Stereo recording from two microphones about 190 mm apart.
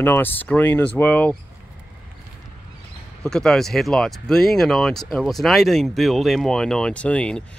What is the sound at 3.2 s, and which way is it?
Speech, 5° left (ahead or behind).